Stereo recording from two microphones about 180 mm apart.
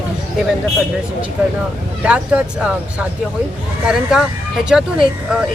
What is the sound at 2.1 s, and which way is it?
Speech, 5° right (ahead or behind).